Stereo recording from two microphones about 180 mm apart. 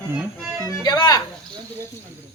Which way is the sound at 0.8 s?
25° left (ahead or behind).